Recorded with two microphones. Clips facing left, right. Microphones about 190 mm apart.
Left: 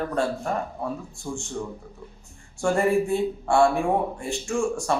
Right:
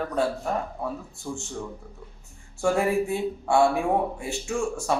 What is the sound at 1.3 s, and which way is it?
Speech, 5° left (ahead or behind).